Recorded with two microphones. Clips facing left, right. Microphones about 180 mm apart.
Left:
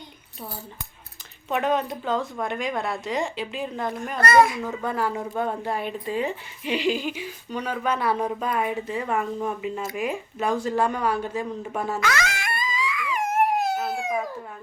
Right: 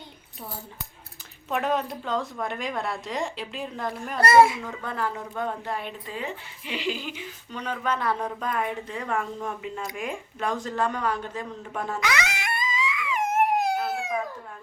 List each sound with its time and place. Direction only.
1.5 s a woman's voice: centre (ahead or behind)
4.2 s speech: 25° right (ahead or behind)
4.6 s speech: 10° left (ahead or behind)
11.9 s wail: 15° right (ahead or behind)